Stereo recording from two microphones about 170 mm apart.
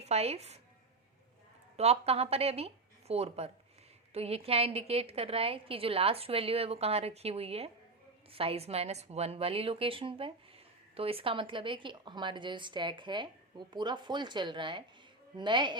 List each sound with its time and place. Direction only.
0.0 s a woman's voice: 40° right (ahead or behind)
1.7 s a woman's voice: 35° right (ahead or behind)